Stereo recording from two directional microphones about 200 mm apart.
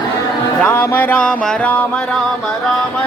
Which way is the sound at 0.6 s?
10° left (ahead or behind).